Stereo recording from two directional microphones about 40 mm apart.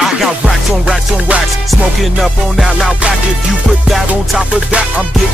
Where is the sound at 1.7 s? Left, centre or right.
Centre.